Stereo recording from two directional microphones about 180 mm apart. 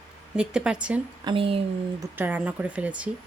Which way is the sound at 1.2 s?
30° right (ahead or behind).